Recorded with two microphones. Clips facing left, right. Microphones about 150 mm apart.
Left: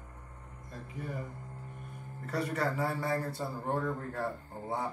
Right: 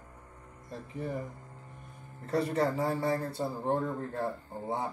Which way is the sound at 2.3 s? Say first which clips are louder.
Right 4 dB; 25° right (ahead or behind).